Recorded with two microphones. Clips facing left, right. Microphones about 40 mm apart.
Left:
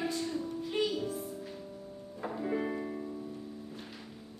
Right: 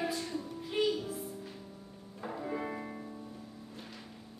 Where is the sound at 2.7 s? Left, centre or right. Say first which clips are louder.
Left 4 dB; centre.